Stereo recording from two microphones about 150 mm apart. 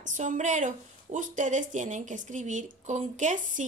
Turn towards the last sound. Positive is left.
turn(degrees=-55)  # may be behind; listen again after turning